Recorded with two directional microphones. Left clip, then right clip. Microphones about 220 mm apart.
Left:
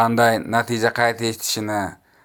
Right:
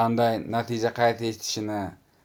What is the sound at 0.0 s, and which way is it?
Speech, 15° left (ahead or behind).